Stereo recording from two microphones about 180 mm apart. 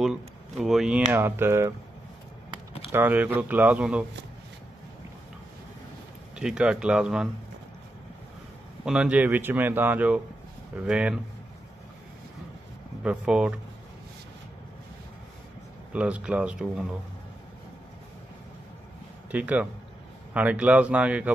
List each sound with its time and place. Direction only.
0.0 s speech: centre (ahead or behind)
1.1 s speech: 15° right (ahead or behind)
2.9 s speech: 10° right (ahead or behind)
6.3 s speech: 5° right (ahead or behind)
8.8 s speech: 5° right (ahead or behind)
13.0 s speech: 5° right (ahead or behind)
15.9 s speech: 5° right (ahead or behind)
19.3 s speech: 10° right (ahead or behind)